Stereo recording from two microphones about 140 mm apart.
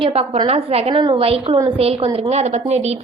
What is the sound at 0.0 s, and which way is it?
A woman's voice, 40° right (ahead or behind).